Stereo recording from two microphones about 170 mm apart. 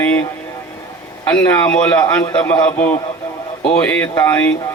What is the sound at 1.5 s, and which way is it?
Speech, 10° left (ahead or behind).